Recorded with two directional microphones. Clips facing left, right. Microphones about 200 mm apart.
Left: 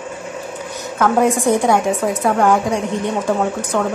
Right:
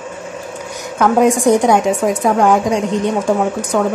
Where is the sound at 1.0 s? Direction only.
15° right (ahead or behind).